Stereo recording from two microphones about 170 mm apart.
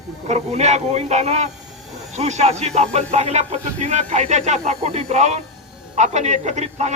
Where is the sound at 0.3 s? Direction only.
40° right (ahead or behind).